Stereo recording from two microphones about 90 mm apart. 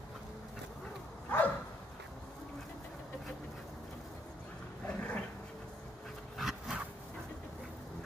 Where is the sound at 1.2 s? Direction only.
20° left (ahead or behind).